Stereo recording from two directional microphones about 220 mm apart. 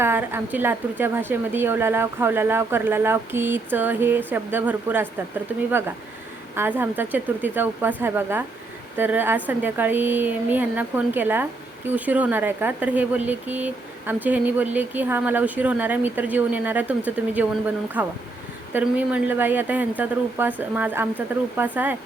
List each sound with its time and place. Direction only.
0.0 s a woman's voice: 10° right (ahead or behind)
6.6 s a woman's voice: 10° right (ahead or behind)